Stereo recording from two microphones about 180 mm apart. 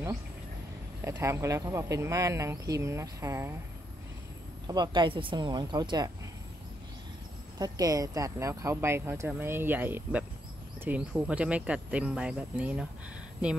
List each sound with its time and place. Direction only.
1.0 s speech: 15° right (ahead or behind)
4.6 s speech: 25° right (ahead or behind)
7.5 s speech: 20° right (ahead or behind)